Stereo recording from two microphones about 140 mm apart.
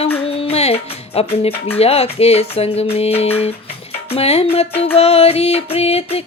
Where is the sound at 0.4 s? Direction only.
45° left (ahead or behind).